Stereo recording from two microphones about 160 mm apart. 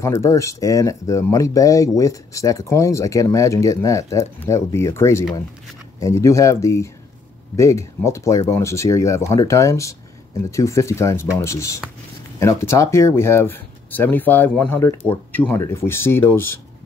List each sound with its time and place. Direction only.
0.0 s speech: 20° left (ahead or behind)